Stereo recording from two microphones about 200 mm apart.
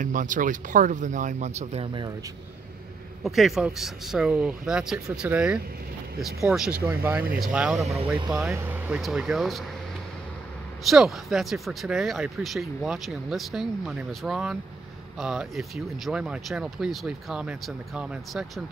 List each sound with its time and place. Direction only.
0.0 s speech: 40° right (ahead or behind); by 2.1 s 25° right (ahead or behind)
3.3 s speech: centre (ahead or behind)
10.9 s speech: centre (ahead or behind)